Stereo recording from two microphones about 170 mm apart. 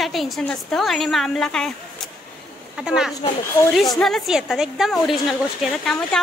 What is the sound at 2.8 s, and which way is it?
A woman's voice, 5° right (ahead or behind).